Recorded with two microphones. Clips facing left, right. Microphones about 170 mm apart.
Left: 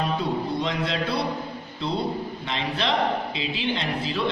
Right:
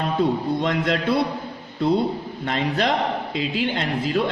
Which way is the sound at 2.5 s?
45° right (ahead or behind).